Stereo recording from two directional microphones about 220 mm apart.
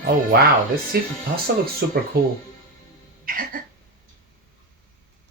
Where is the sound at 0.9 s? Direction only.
45° right (ahead or behind).